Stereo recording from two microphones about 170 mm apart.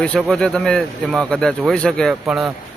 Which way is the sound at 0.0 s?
5° left (ahead or behind).